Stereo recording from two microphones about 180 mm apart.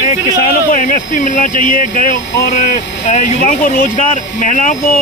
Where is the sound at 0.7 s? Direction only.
45° left (ahead or behind).